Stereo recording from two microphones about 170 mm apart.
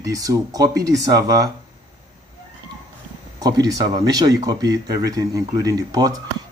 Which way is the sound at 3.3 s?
20° right (ahead or behind).